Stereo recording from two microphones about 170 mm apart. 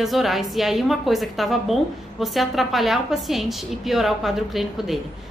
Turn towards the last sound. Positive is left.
turn(degrees=0)  # may be behind; listen again after turning